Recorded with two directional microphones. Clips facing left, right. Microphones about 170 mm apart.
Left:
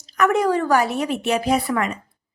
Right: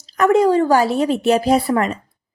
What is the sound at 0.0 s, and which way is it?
A woman's voice, 30° right (ahead or behind).